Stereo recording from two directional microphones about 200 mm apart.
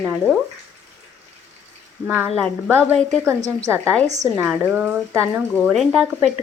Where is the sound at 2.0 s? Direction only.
10° right (ahead or behind).